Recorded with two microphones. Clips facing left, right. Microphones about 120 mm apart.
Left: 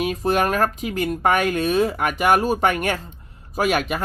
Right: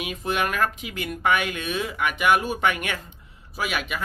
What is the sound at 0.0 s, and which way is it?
Speech, 40° left (ahead or behind).